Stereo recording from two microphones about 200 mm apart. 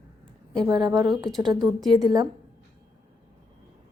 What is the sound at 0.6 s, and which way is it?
A woman's voice, 20° right (ahead or behind).